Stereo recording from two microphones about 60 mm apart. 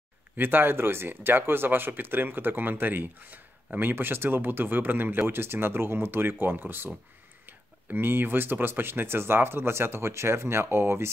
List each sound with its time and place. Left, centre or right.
0.4 s speech: right